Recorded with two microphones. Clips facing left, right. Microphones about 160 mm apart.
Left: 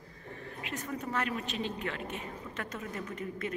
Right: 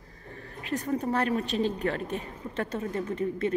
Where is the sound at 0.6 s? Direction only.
35° right (ahead or behind).